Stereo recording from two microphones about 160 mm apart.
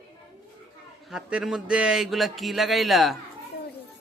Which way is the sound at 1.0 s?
5° right (ahead or behind).